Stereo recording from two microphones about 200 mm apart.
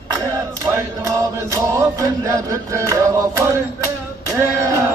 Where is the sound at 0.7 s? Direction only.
15° right (ahead or behind).